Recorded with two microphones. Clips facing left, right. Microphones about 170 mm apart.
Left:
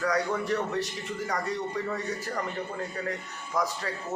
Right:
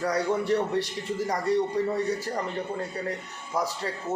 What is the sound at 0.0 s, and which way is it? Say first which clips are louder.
Speech: right 2 dB; 30° right (ahead or behind).